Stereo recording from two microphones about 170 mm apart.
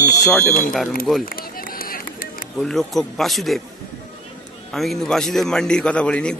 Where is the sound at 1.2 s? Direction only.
60° left (ahead or behind).